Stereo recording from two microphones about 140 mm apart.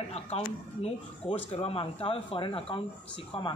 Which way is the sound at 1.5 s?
45° left (ahead or behind).